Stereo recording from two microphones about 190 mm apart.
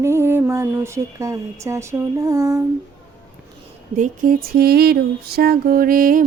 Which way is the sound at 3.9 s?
40° right (ahead or behind).